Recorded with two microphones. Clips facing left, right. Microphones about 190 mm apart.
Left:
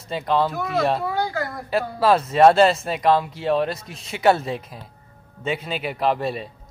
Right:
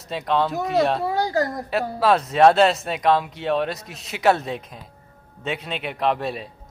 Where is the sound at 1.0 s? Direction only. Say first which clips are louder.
Right 3 dB; 40° right (ahead or behind).